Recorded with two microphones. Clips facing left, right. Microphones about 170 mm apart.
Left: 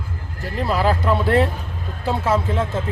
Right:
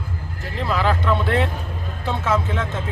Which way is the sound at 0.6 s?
35° left (ahead or behind).